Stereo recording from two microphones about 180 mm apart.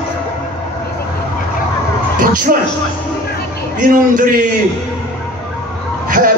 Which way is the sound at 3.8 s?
45° right (ahead or behind).